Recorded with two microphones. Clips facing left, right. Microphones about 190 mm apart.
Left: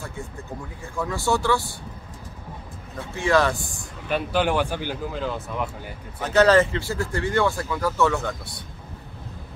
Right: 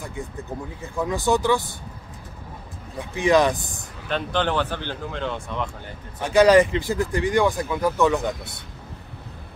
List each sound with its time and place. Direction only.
0.9 s speech: 15° right (ahead or behind)
3.0 s speech: 15° right (ahead or behind)
4.1 s speech: 10° left (ahead or behind)
6.2 s speech: 10° right (ahead or behind)